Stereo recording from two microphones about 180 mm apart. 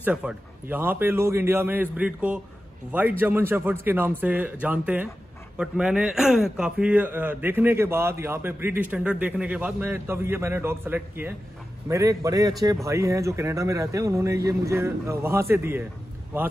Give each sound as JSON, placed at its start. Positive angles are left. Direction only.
{"t": 0.0, "sound": "a man's voice", "side_deg": -5}